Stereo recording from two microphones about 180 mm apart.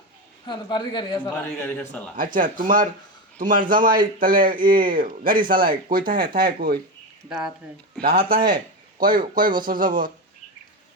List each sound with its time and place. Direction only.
0.4 s speech: 25° left (ahead or behind)
1.3 s a man's voice: 10° left (ahead or behind)
2.1 s speech: 50° right (ahead or behind)
7.3 s speech: 5° right (ahead or behind)
8.1 s speech: 55° right (ahead or behind)